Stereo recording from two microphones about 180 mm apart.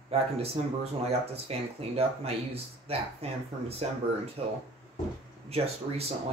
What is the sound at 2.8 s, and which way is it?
Speech, 35° right (ahead or behind).